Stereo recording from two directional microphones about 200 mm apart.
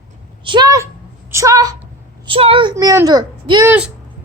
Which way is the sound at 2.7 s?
15° right (ahead or behind).